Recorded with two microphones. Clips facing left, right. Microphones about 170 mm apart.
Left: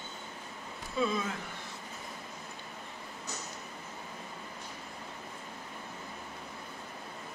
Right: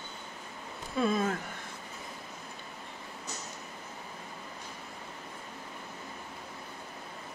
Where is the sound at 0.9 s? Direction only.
50° right (ahead or behind).